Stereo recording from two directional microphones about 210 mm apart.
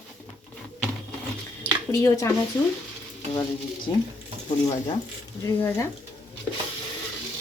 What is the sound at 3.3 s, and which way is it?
Speech, 20° left (ahead or behind).